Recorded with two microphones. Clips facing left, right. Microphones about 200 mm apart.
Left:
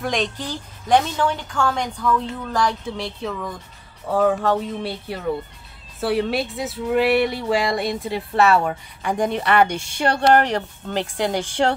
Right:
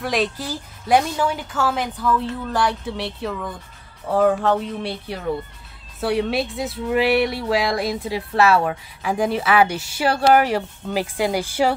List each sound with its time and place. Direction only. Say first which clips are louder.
0.0 s speech: right 1 dB; 5° right (ahead or behind)